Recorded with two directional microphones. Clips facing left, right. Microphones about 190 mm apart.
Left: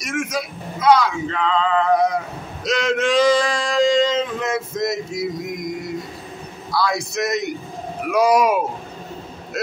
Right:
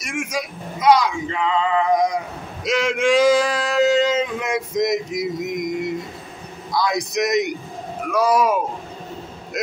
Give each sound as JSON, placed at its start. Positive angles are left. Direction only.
{"t": 0.0, "sound": "a man's voice", "side_deg": -10}
{"t": 8.1, "sound": "speech", "side_deg": 15}